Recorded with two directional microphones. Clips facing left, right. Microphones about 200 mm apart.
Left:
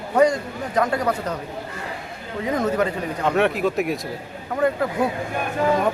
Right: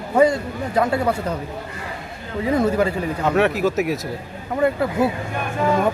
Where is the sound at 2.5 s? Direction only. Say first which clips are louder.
Right 3 dB; 10° right (ahead or behind).